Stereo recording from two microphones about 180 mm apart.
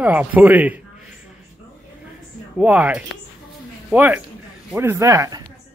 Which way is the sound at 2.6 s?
5° right (ahead or behind).